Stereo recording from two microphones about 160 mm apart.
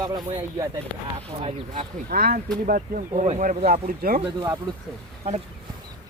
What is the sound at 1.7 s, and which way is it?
Speech, 70° right (ahead or behind).